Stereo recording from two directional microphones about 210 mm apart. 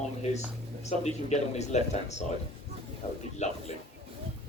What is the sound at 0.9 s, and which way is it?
Speech, 30° left (ahead or behind).